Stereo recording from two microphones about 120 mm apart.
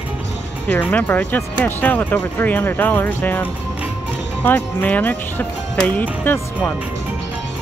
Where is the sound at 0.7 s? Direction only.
15° left (ahead or behind).